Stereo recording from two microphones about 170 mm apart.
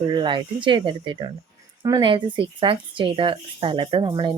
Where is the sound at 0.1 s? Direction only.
30° right (ahead or behind).